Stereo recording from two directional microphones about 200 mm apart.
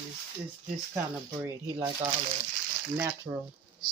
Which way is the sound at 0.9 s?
20° right (ahead or behind).